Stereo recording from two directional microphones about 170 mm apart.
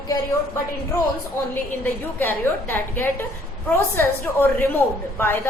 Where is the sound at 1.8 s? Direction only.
10° left (ahead or behind).